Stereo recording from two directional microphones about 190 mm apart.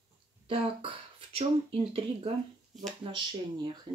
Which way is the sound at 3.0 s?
25° right (ahead or behind).